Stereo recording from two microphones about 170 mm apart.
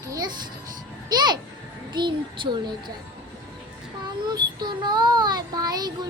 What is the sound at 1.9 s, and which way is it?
Child singing, 25° right (ahead or behind).